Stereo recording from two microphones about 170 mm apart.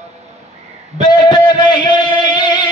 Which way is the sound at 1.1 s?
25° left (ahead or behind).